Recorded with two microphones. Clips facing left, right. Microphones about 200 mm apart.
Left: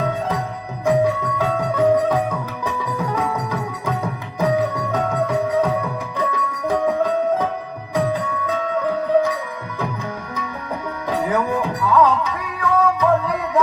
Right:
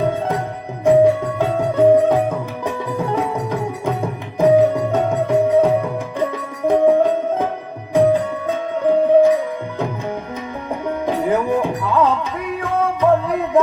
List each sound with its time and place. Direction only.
0.9 s music: 25° right (ahead or behind)
8.8 s music: 25° right (ahead or behind)